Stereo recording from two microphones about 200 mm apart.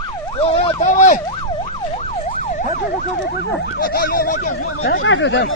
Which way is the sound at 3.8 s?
50° left (ahead or behind).